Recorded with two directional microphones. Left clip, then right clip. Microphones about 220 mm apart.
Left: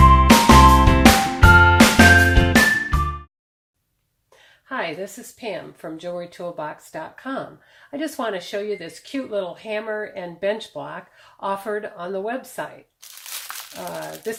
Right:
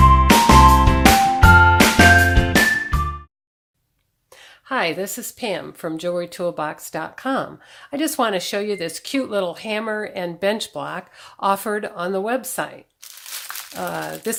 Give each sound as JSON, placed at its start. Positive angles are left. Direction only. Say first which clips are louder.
{"t": 0.0, "sound": "music", "louder": "even", "side_deg": 0}
{"t": 4.7, "sound": "a woman's voice", "louder": "right 5 dB", "side_deg": -40}
{"t": 13.5, "sound": "crumpling", "louder": "right 2 dB", "side_deg": 0}